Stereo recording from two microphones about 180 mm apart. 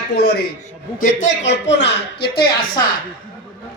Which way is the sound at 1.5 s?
75° left (ahead or behind).